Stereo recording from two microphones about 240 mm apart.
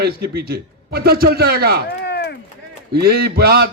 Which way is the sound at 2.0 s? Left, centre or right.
Left.